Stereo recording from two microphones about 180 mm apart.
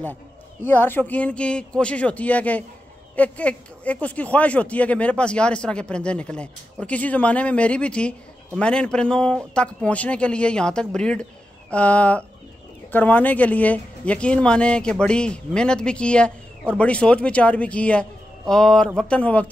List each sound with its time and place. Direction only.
0.7 s speech: 10° left (ahead or behind)